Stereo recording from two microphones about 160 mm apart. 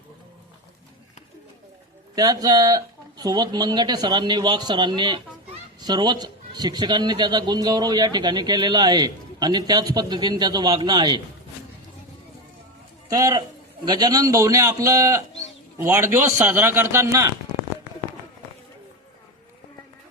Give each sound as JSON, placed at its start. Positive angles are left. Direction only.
{"t": 2.1, "sound": "a man's voice", "side_deg": -25}
{"t": 13.1, "sound": "a man's voice", "side_deg": -20}